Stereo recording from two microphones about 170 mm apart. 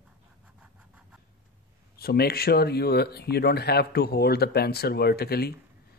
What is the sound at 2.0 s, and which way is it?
Speech, 65° left (ahead or behind).